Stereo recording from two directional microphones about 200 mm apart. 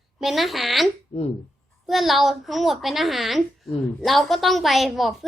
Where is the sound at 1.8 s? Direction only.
Centre (ahead or behind).